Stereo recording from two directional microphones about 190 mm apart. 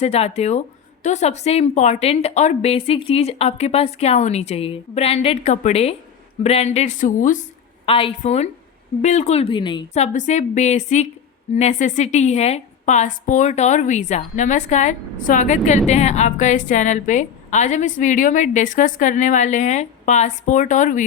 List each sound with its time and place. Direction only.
0.0 s a woman's voice: 35° left (ahead or behind)
7.9 s a woman's voice: 30° left (ahead or behind)
9.9 s a woman's voice: 40° left (ahead or behind)